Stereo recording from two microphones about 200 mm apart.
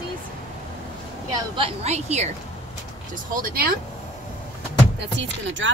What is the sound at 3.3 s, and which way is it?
Speech, 45° right (ahead or behind).